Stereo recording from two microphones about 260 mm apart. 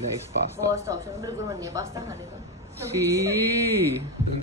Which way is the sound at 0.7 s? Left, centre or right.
Centre.